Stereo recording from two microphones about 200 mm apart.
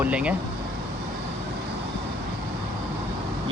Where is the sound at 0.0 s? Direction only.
5° right (ahead or behind).